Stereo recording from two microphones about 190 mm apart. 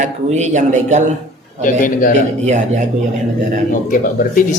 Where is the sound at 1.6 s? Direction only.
45° left (ahead or behind).